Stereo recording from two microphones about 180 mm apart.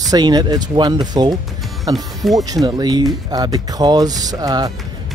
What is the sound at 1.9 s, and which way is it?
Speech, centre (ahead or behind).